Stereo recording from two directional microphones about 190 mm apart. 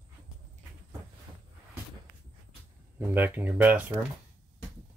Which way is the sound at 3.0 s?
10° right (ahead or behind).